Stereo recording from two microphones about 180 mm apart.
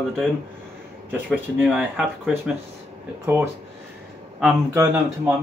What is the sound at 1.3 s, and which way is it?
Speech, 5° right (ahead or behind).